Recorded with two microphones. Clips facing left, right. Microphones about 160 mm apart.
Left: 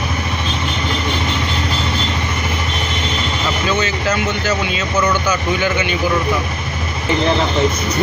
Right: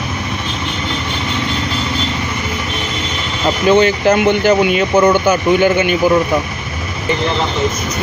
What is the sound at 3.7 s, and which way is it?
Speech, 60° right (ahead or behind).